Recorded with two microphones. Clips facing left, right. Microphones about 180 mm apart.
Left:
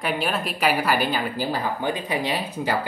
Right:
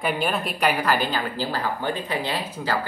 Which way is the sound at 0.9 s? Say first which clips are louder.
Left 1 dB; 10° left (ahead or behind).